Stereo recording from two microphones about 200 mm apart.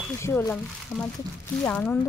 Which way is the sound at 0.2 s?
10° left (ahead or behind).